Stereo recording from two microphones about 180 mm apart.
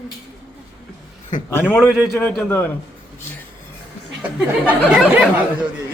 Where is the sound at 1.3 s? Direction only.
45° left (ahead or behind).